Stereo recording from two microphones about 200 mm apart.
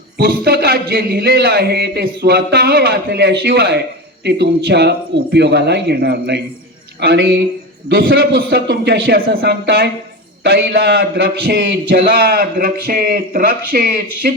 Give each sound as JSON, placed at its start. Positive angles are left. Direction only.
{"t": 0.2, "sound": "a man's voice", "side_deg": -50}
{"t": 7.9, "sound": "a man's voice", "side_deg": -45}